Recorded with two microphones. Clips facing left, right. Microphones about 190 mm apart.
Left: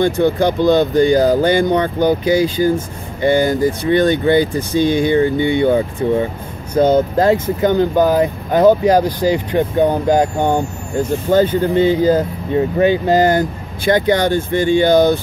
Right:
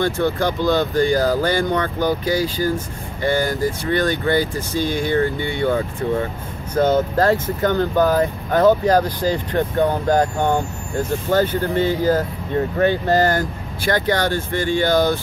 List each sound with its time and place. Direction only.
0.0 s speech: 20° left (ahead or behind)